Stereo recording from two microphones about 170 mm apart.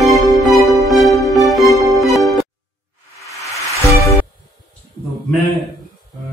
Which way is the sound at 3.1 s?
20° left (ahead or behind).